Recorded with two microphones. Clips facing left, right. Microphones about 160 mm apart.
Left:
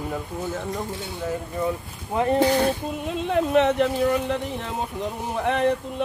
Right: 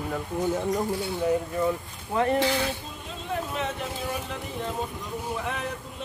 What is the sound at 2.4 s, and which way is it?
Speech, 50° left (ahead or behind).